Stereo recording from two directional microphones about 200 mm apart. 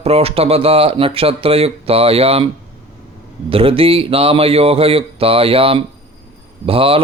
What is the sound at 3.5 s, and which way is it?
Speech, 25° right (ahead or behind).